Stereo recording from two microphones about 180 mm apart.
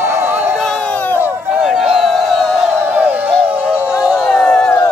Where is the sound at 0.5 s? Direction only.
5° left (ahead or behind).